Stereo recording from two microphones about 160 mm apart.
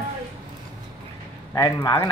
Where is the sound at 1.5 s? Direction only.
20° left (ahead or behind).